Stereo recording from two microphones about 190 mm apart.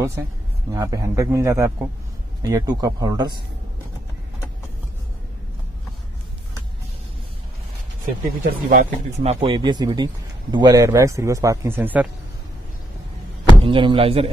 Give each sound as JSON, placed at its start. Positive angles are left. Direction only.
{"t": 0.7, "sound": "a man's voice", "side_deg": -20}
{"t": 8.0, "sound": "speech", "side_deg": -45}
{"t": 13.7, "sound": "speech", "side_deg": -25}